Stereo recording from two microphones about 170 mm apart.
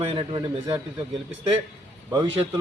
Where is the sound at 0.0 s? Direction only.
30° right (ahead or behind).